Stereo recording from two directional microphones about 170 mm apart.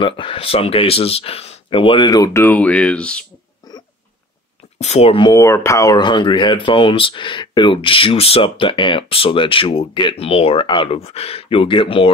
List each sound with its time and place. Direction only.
0.0 s speech: 30° left (ahead or behind); by 3.3 s 5° left (ahead or behind)
4.7 s speech: 40° left (ahead or behind)